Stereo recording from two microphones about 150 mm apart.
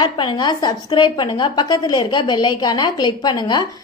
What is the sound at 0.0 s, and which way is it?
A woman's voice, 30° left (ahead or behind).